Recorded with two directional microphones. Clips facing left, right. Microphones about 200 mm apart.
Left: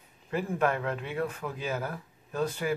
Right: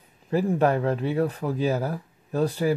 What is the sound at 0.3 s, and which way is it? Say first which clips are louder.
Speech: right 7 dB; 35° right (ahead or behind).